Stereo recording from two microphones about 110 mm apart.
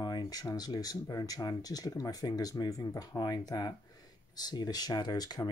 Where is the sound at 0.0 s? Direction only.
40° left (ahead or behind).